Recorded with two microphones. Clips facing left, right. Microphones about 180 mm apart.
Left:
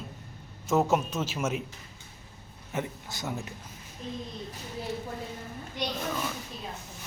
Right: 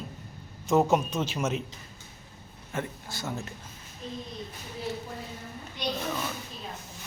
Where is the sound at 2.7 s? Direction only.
20° left (ahead or behind).